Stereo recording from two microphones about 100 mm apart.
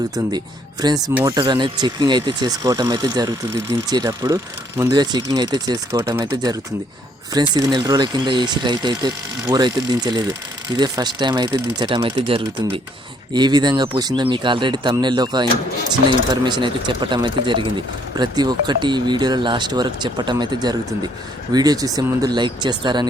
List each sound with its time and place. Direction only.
0.3 s speech: 45° right (ahead or behind)
4.9 s speech: 45° right (ahead or behind)
6.0 s speech: 25° right (ahead or behind)
6.3 s speech: 40° right (ahead or behind)
12.1 s speech: 70° right (ahead or behind)
13.3 s speech: 45° right (ahead or behind)